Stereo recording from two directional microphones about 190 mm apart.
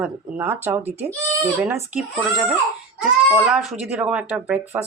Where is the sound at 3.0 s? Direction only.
Centre (ahead or behind).